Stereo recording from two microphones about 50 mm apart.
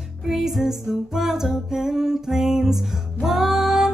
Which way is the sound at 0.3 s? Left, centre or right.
Centre.